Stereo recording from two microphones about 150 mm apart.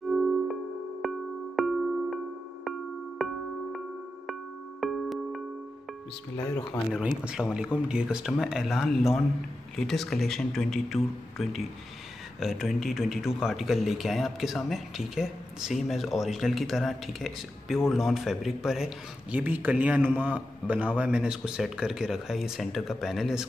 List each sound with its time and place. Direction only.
0.0 s music: centre (ahead or behind)
3.2 s music: centre (ahead or behind)
6.3 s speech: 20° left (ahead or behind)
6.9 s a man's voice: 5° right (ahead or behind)